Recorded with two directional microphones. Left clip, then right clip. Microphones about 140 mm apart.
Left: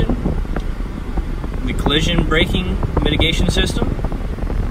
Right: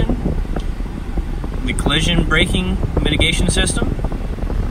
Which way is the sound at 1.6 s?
5° left (ahead or behind).